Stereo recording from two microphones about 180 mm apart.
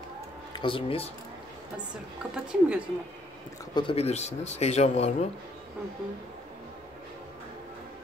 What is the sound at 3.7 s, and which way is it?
Speech, 30° left (ahead or behind).